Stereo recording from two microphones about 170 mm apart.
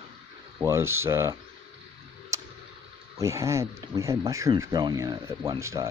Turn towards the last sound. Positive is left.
turn(degrees=-15)  # may be behind; listen again after turning